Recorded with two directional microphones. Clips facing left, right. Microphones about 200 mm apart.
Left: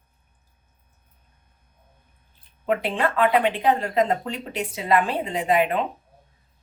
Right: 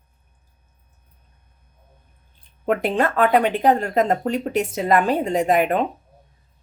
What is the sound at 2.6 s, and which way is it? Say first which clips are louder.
Speech: right 3 dB; 45° right (ahead or behind).